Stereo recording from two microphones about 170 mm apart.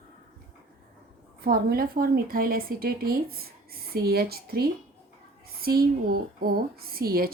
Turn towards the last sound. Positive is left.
turn(degrees=-60)  # may be behind; listen again after turning